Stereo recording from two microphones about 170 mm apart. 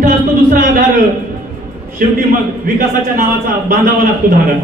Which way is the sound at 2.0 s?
55° right (ahead or behind).